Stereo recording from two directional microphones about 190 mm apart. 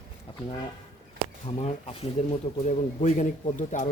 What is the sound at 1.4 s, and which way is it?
A man's voice, 30° left (ahead or behind).